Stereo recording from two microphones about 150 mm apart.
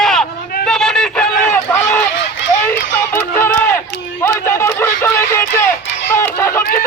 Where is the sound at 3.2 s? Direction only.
15° left (ahead or behind).